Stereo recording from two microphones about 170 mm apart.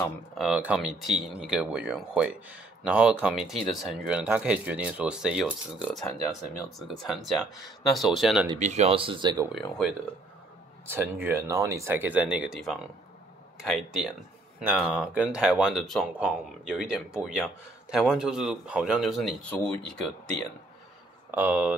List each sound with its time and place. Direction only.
0.3 s speech: centre (ahead or behind)
8.5 s speech: 40° right (ahead or behind); by 9.5 s 25° right (ahead or behind)
9.5 s speech: centre (ahead or behind)
21.3 s speech: 10° right (ahead or behind)